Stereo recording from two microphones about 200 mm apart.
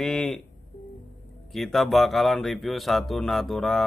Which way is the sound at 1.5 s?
Centre (ahead or behind).